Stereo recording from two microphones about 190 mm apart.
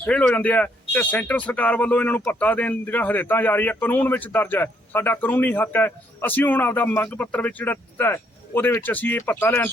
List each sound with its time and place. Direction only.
0.0 s speech: 5° left (ahead or behind)